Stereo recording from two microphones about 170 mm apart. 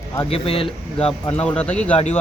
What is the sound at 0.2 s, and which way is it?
Speech, 35° left (ahead or behind).